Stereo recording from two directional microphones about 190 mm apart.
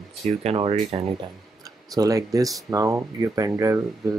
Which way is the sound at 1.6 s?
20° right (ahead or behind).